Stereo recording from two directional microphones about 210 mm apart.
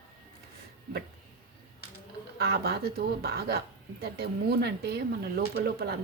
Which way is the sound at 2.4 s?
50° right (ahead or behind).